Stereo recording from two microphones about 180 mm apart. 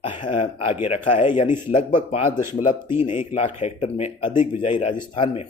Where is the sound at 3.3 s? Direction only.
35° left (ahead or behind).